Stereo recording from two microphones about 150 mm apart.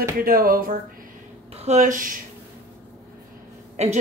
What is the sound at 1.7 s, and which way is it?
Speech, 55° right (ahead or behind).